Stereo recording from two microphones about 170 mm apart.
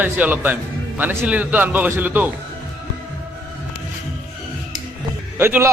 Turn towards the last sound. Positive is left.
turn(degrees=-15)  # may be behind; listen again after turning